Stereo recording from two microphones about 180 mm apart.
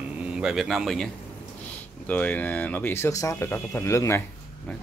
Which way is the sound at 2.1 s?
10° left (ahead or behind).